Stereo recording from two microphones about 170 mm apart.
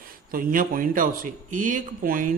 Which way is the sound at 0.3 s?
55° right (ahead or behind).